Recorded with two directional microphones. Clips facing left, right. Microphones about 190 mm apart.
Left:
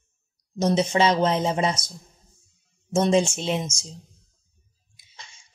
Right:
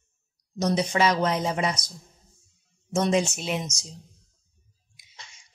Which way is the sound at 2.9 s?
30° left (ahead or behind).